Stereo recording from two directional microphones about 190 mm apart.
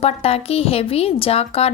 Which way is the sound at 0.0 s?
30° left (ahead or behind).